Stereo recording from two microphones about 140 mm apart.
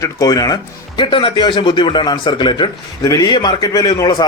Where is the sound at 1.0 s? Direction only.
40° left (ahead or behind).